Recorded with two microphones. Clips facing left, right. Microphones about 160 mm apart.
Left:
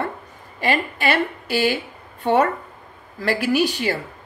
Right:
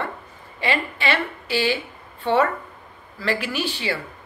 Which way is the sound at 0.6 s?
40° left (ahead or behind).